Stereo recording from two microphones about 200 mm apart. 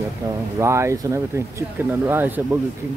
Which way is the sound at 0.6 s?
15° right (ahead or behind).